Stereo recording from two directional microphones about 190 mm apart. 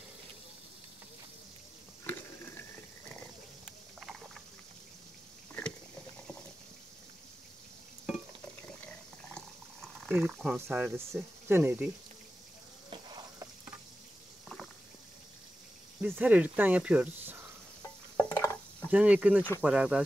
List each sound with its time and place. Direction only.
3.6 s vehicle: centre (ahead or behind)
8.8 s boiling: 5° left (ahead or behind)
12.9 s a sound: 25° right (ahead or behind)
16.0 s speech: 5° right (ahead or behind)
18.1 s a sound: 10° left (ahead or behind)
18.9 s speech: 5° right (ahead or behind)